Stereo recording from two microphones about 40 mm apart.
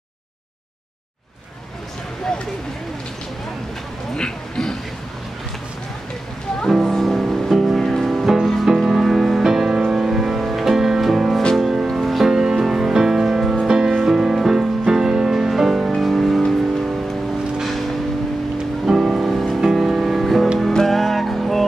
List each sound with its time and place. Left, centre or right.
4.1 s music: centre
6.9 s music: centre
12.3 s music: centre
17.6 s vehicle: centre
18.9 s music: centre